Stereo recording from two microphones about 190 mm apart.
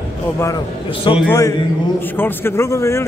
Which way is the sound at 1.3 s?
15° left (ahead or behind).